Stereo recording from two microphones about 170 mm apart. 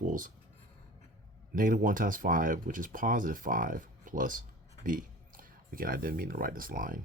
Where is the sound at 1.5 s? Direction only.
50° right (ahead or behind).